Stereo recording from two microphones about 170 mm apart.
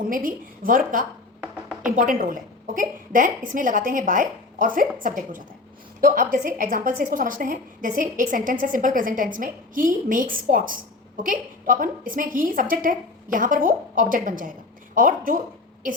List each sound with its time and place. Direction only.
0.0 s a woman's voice: 55° right (ahead or behind)